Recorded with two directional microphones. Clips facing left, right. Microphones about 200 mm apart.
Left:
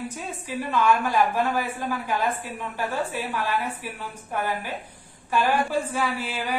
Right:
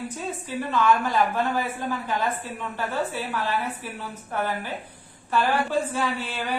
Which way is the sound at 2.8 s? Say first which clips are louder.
Even; 10° left (ahead or behind).